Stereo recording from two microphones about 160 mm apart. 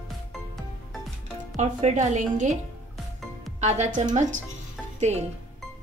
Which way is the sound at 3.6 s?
45° right (ahead or behind).